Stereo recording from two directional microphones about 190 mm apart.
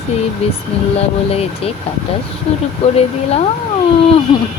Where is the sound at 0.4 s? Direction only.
35° left (ahead or behind).